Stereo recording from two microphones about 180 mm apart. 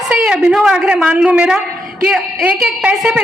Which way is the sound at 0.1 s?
5° right (ahead or behind).